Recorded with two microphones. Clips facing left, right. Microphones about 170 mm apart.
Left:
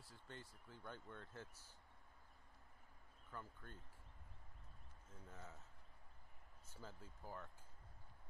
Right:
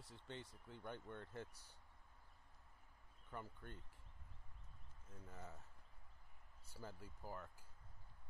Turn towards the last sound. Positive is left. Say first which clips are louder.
# right 2 dB
turn(degrees=-10)  # may be behind; listen again after turning